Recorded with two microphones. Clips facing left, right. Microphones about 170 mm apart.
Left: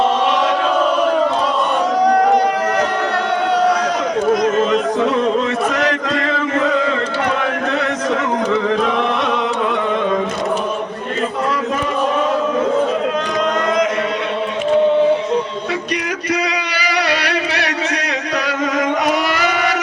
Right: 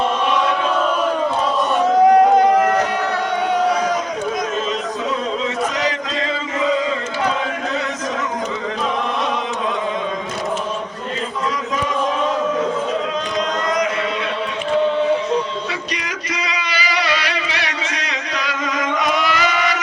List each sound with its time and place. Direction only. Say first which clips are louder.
4.3 s a sound: left 10 dB; 60° left (ahead or behind)
5.8 s chant: left 4 dB; 65° left (ahead or behind)
16.3 s music: left 5 dB; 60° left (ahead or behind)
18.4 s chant: left 4 dB; 55° left (ahead or behind)